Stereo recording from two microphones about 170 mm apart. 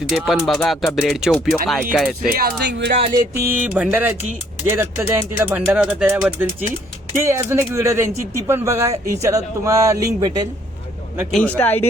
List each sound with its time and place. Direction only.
0.1 s speech: centre (ahead or behind)
2.3 s speech: 75° right (ahead or behind)
3.1 s speech: 15° right (ahead or behind)
11.3 s speech: 5° left (ahead or behind)